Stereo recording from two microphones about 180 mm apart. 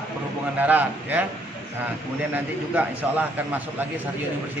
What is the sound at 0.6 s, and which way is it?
Speech, 10° right (ahead or behind).